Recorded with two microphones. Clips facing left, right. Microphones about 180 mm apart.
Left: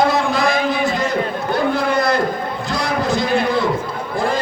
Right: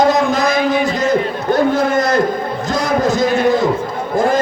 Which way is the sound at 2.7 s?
40° right (ahead or behind).